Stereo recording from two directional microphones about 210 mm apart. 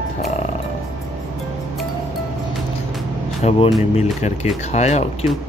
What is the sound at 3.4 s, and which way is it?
Speech, 30° left (ahead or behind).